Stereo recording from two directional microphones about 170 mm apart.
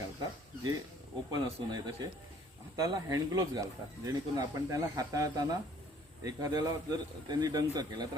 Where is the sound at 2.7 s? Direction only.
20° right (ahead or behind).